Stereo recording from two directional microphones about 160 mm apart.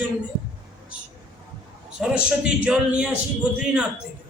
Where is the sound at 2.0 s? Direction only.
5° right (ahead or behind).